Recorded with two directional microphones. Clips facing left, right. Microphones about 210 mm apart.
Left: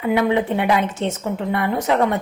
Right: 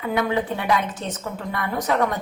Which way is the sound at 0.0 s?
25° left (ahead or behind).